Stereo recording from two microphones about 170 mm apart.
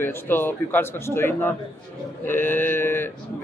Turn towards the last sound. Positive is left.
turn(degrees=15)  # may be behind; listen again after turning